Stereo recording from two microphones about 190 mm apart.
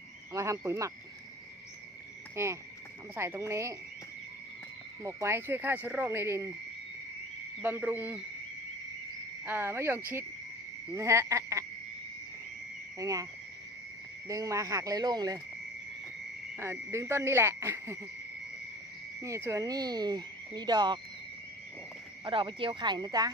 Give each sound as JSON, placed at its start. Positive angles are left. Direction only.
{"t": 0.3, "sound": "speech", "side_deg": -15}
{"t": 2.3, "sound": "cricket", "side_deg": -15}
{"t": 3.2, "sound": "speech", "side_deg": -15}
{"t": 5.0, "sound": "speech", "side_deg": -15}
{"t": 7.6, "sound": "speech", "side_deg": -10}
{"t": 9.4, "sound": "speech", "side_deg": -10}
{"t": 13.0, "sound": "speech", "side_deg": -15}
{"t": 16.5, "sound": "speech", "side_deg": -15}
{"t": 19.2, "sound": "speech", "side_deg": -15}
{"t": 22.2, "sound": "speech", "side_deg": -25}